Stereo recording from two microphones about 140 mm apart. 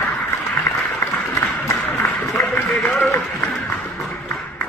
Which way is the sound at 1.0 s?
20° left (ahead or behind).